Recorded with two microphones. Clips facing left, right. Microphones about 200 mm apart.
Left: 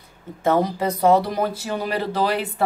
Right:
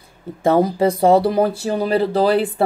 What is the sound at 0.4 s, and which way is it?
Speech, 30° right (ahead or behind).